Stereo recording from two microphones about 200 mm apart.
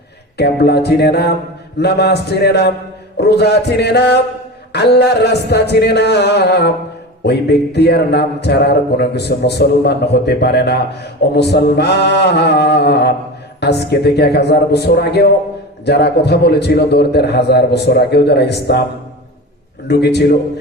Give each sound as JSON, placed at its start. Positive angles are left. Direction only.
{"t": 0.3, "sound": "a man's voice", "side_deg": 55}
{"t": 19.9, "sound": "a man's voice", "side_deg": 55}